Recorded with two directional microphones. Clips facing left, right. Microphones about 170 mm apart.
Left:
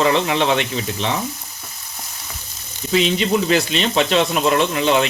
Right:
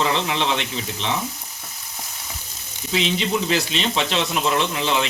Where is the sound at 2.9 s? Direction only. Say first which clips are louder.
Left 5 dB; 50° left (ahead or behind).